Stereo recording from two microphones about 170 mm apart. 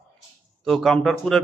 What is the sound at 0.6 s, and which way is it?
Speech, 5° left (ahead or behind).